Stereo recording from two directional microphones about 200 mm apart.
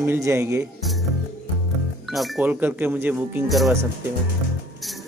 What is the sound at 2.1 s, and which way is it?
Speech, centre (ahead or behind).